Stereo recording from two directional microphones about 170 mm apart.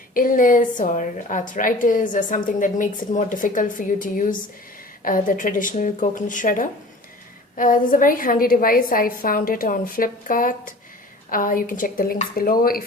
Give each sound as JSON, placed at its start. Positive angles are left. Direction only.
{"t": 0.1, "sound": "a woman's voice", "side_deg": 55}